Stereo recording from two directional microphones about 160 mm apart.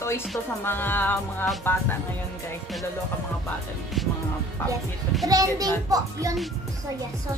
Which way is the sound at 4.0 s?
Centre (ahead or behind).